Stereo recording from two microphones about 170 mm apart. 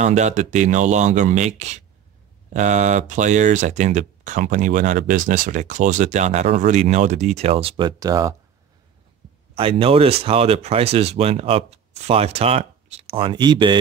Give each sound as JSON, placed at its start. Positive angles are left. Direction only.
{"t": 0.0, "sound": "speech", "side_deg": -45}
{"t": 9.6, "sound": "speech", "side_deg": -30}